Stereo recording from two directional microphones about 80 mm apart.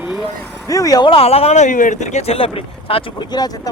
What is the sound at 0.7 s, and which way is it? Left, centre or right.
Speech, left.